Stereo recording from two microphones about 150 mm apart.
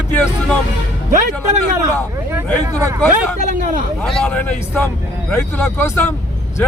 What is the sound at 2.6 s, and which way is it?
Speech, 20° right (ahead or behind).